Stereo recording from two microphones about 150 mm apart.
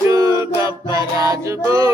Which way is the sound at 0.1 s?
20° right (ahead or behind).